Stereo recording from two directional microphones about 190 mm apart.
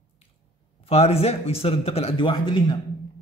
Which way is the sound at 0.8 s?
30° left (ahead or behind).